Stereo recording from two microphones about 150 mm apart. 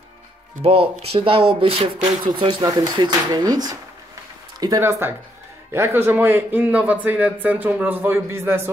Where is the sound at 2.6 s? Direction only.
25° right (ahead or behind).